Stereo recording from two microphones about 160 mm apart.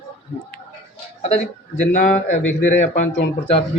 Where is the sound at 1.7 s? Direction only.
50° left (ahead or behind).